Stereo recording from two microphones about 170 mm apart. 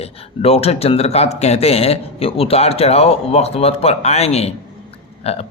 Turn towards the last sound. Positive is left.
turn(degrees=35)  # may be behind; listen again after turning